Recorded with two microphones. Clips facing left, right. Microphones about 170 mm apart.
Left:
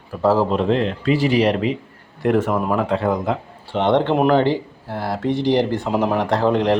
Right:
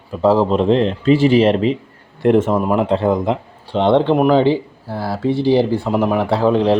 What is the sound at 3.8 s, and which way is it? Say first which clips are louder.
Speech: right 3 dB; 10° right (ahead or behind).